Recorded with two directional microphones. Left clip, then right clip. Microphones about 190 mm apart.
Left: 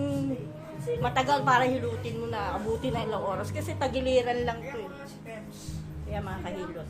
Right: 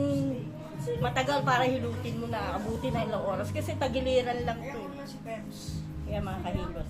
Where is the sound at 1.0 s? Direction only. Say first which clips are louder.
Left 3 dB; 30° left (ahead or behind).